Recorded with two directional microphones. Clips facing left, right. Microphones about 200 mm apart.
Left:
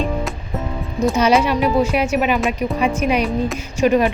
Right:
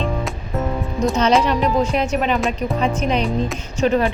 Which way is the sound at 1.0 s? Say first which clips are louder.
Left 1 dB; 5° left (ahead or behind).